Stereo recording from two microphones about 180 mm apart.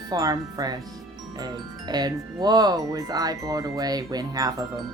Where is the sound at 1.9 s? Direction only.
20° right (ahead or behind).